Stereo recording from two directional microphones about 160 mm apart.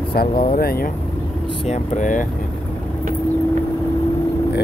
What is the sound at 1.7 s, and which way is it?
Speech, 50° left (ahead or behind).